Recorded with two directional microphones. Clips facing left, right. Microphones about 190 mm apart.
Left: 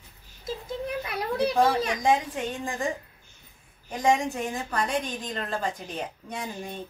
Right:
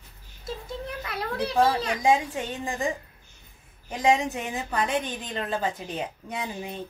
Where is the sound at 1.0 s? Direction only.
15° left (ahead or behind).